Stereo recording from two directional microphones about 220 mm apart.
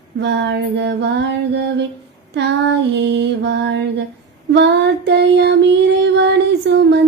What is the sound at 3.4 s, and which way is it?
Child singing, 55° right (ahead or behind).